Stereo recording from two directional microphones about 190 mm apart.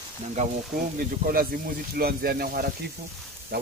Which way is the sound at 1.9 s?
55° right (ahead or behind).